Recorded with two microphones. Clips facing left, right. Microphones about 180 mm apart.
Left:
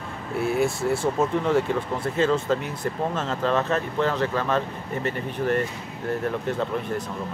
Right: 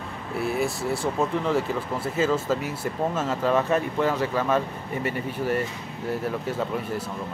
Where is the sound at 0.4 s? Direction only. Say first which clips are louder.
Left 3 dB; centre (ahead or behind).